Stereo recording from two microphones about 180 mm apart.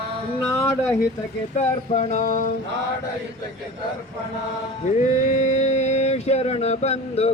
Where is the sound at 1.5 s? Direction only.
40° left (ahead or behind).